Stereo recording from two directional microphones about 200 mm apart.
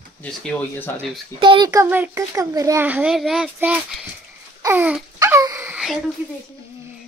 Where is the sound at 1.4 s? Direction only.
20° right (ahead or behind); by 3.8 s 5° right (ahead or behind).